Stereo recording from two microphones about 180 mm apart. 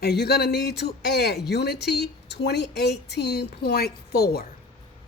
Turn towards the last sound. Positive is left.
turn(degrees=60)  # may be behind; listen again after turning